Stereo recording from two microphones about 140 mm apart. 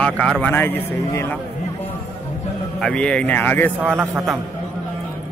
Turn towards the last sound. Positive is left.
turn(degrees=-10)  # may be behind; listen again after turning